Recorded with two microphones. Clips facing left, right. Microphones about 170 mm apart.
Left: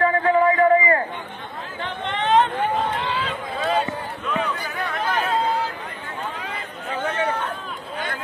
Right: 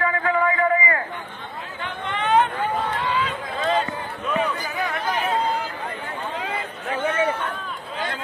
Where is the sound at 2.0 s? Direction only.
30° left (ahead or behind).